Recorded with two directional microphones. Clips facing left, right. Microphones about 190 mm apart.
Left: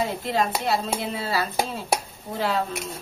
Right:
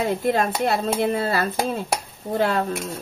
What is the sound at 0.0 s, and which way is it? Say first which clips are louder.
Speech: right 4 dB; 50° right (ahead or behind).